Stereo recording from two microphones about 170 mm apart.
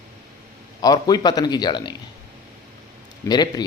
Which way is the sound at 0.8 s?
20° left (ahead or behind).